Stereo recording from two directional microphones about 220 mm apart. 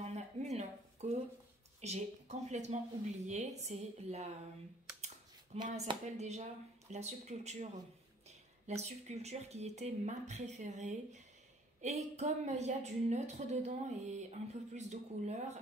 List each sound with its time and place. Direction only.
0.0 s a sound: 30° right (ahead or behind)
1.8 s a woman's voice: 30° right (ahead or behind)
8.6 s a woman's voice: 30° right (ahead or behind)